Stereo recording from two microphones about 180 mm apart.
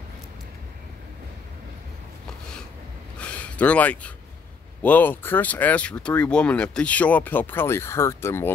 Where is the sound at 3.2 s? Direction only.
5° left (ahead or behind).